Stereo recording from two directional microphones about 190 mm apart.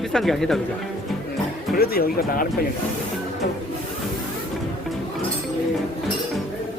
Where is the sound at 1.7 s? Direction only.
55° left (ahead or behind).